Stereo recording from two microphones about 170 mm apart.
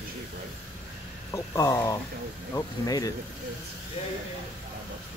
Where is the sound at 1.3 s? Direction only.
20° left (ahead or behind).